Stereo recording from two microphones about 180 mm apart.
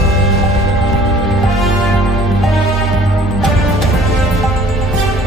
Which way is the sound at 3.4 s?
Centre (ahead or behind).